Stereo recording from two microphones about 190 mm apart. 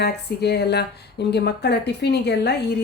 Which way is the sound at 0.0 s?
60° left (ahead or behind).